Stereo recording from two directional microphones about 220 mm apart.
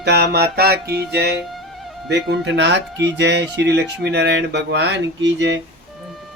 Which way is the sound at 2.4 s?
55° right (ahead or behind).